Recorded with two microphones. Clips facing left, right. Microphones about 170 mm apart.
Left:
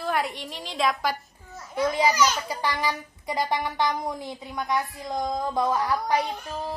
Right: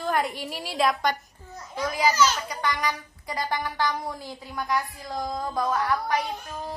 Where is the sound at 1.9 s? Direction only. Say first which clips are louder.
Even; 25° left (ahead or behind).